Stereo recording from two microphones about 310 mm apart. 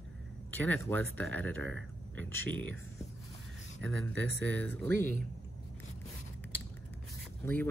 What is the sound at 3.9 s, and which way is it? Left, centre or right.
Speech, right.